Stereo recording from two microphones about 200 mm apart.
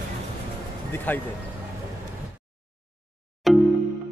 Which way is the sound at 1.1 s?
10° left (ahead or behind).